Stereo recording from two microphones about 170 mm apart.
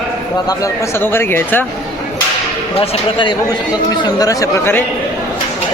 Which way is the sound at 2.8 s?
30° left (ahead or behind).